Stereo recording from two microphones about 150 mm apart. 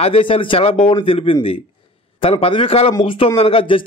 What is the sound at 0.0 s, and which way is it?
Speech, 35° left (ahead or behind).